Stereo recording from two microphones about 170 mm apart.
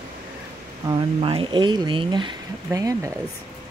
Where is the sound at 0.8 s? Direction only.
30° right (ahead or behind).